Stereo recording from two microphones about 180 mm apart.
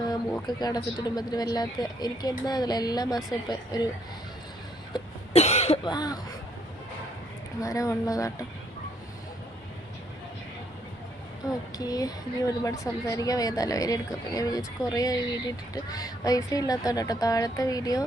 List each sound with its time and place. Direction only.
0.4 s speech: 20° left (ahead or behind)
4.9 s cough: 35° left (ahead or behind)
7.6 s speech: 20° left (ahead or behind)
11.8 s speech: 20° left (ahead or behind)